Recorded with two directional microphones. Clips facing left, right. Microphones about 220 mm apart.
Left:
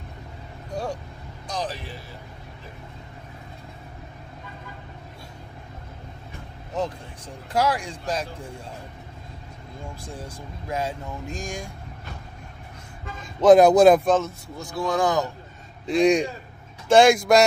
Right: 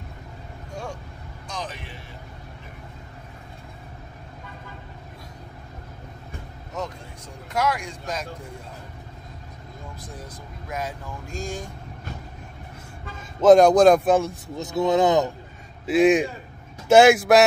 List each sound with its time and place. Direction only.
1.5 s vehicle: 35° left (ahead or behind)
6.8 s vehicle: 30° left (ahead or behind)
7.5 s speech: 30° left (ahead or behind)
10.0 s speech: 30° left (ahead or behind)
13.4 s speech: 5° left (ahead or behind)
14.0 s speech: 10° right (ahead or behind)
14.6 s speech: 20° right (ahead or behind)
15.9 s speech: 5° right (ahead or behind)